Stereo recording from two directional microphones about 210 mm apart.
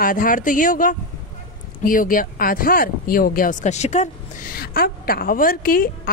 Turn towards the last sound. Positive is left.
turn(degrees=45)  # may be behind; listen again after turning